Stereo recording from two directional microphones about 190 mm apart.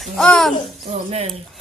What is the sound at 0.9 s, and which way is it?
Speech, 35° right (ahead or behind).